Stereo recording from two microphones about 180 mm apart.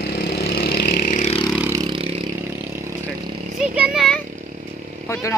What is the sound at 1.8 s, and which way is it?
Vehicle, 30° right (ahead or behind).